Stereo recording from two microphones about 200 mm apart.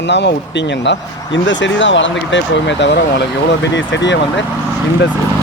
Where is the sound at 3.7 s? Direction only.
65° left (ahead or behind).